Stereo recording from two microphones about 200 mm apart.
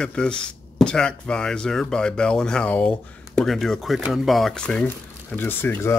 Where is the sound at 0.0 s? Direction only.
5° left (ahead or behind).